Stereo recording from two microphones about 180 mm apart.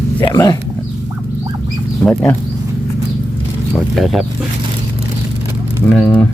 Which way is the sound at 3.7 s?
Centre (ahead or behind).